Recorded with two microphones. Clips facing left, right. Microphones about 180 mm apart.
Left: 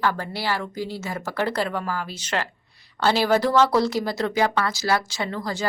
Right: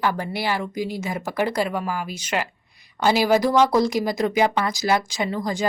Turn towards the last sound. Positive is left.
turn(degrees=-15)  # may be behind; listen again after turning